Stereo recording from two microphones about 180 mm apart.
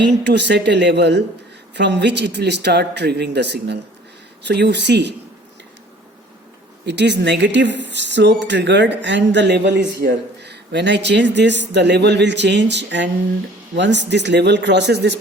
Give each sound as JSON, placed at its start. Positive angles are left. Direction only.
{"t": 0.3, "sound": "speech", "side_deg": -70}
{"t": 6.8, "sound": "speech", "side_deg": -75}